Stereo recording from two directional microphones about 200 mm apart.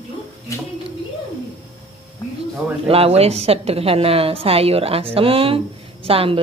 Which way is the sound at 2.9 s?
30° right (ahead or behind).